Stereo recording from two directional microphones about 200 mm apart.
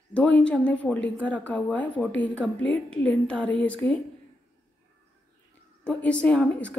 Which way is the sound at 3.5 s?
70° left (ahead or behind).